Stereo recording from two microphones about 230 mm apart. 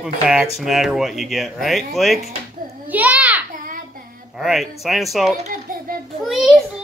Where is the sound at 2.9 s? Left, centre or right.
Centre.